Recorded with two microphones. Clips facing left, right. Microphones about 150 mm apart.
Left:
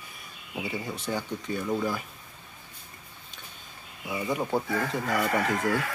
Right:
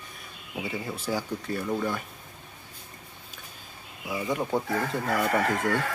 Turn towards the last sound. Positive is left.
turn(degrees=0)  # may be behind; listen again after turning